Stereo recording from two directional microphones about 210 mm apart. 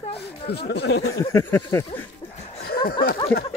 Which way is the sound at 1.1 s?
15° left (ahead or behind).